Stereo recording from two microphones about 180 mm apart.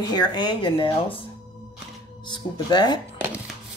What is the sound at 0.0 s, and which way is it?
Speech, 25° left (ahead or behind).